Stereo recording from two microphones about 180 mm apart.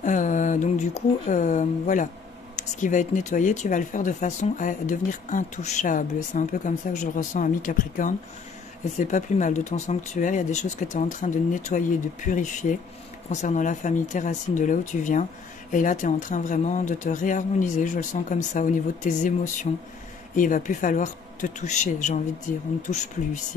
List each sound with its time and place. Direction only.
0.0 s speech: 45° left (ahead or behind)